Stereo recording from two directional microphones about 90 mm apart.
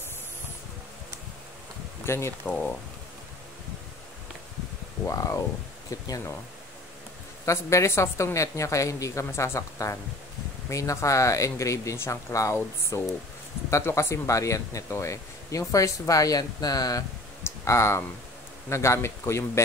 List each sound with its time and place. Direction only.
2.0 s speech: 30° left (ahead or behind)
2.4 s speech: 15° left (ahead or behind)
5.0 s speech: 35° left (ahead or behind)
7.4 s speech: 35° left (ahead or behind)
17.4 s a sound: 30° left (ahead or behind)
18.7 s speech: 30° left (ahead or behind)